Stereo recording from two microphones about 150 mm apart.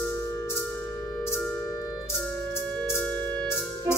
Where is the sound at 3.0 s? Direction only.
5° left (ahead or behind).